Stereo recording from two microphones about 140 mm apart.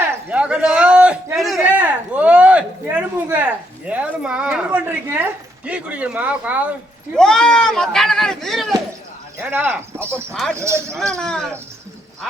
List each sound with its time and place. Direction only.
0.0 s a sound: 10° right (ahead or behind)
2.9 s a woman's voice: 10° right (ahead or behind)
7.2 s speech: 5° left (ahead or behind)
9.4 s speech: 10° right (ahead or behind)
10.9 s speech: 5° left (ahead or behind)